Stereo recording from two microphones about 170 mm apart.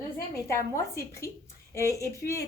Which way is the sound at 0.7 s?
15° left (ahead or behind).